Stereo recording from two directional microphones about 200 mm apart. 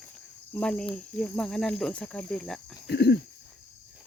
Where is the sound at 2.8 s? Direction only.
55° left (ahead or behind).